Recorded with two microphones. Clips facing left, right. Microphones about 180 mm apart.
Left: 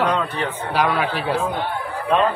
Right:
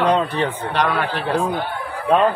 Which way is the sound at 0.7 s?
5° left (ahead or behind).